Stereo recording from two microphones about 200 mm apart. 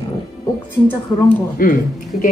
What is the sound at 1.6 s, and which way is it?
Speech, 45° left (ahead or behind).